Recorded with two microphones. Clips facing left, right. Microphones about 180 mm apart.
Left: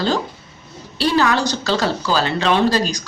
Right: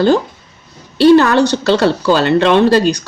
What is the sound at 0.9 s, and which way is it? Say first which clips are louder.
Speech: right 10 dB; 60° right (ahead or behind).